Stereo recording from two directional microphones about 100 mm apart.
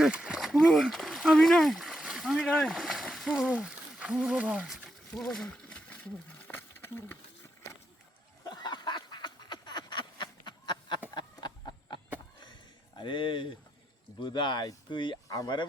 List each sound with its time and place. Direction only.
0.0 s a sound: 10° right (ahead or behind)
2.6 s speech: 5° right (ahead or behind)
5.1 s speech: 5° left (ahead or behind)
5.6 s wild animals: 15° left (ahead or behind)
8.4 s a sound: 45° left (ahead or behind)
13.0 s speech: 55° left (ahead or behind)